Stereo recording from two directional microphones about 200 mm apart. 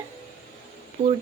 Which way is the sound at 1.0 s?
30° right (ahead or behind).